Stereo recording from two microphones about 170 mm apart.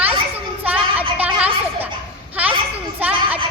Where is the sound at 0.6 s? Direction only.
10° right (ahead or behind).